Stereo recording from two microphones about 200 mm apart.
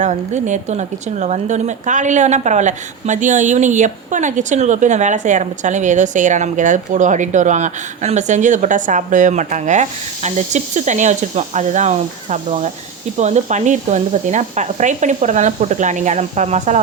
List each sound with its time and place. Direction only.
0.0 s a woman's voice: 35° right (ahead or behind)